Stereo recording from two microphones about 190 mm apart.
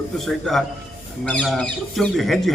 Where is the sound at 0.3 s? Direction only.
Centre (ahead or behind).